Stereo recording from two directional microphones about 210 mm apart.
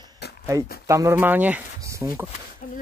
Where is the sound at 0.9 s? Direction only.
15° right (ahead or behind).